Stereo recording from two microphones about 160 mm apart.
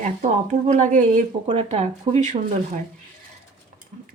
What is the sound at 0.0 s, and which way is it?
Speech, 50° right (ahead or behind).